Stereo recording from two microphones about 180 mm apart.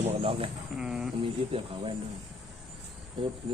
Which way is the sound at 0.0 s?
30° right (ahead or behind).